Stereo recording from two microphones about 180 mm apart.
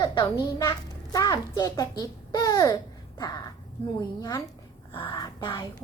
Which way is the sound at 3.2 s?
20° left (ahead or behind).